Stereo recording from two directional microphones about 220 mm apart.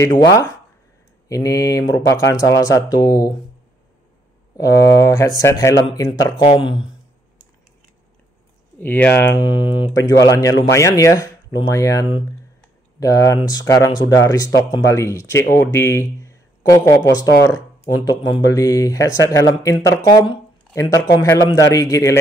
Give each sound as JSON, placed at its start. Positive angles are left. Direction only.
{"t": 0.0, "sound": "speech", "side_deg": 15}
{"t": 4.6, "sound": "speech", "side_deg": 15}
{"t": 8.7, "sound": "speech", "side_deg": 10}
{"t": 9.3, "sound": "speech", "side_deg": 20}